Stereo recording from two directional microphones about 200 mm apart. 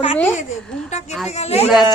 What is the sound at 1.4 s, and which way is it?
Speech, 30° left (ahead or behind).